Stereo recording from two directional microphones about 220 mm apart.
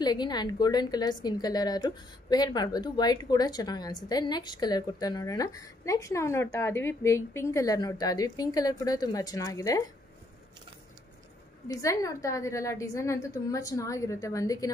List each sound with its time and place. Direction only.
0.0 s a woman's voice: 20° left (ahead or behind)
11.6 s a woman's voice: 15° left (ahead or behind)